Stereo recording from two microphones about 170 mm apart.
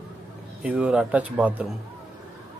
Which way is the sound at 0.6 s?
10° right (ahead or behind).